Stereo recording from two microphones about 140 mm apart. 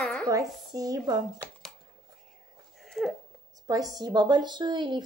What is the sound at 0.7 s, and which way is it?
Speech, 25° right (ahead or behind).